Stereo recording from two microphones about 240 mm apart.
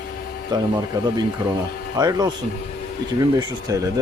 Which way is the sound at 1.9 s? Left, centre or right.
Centre.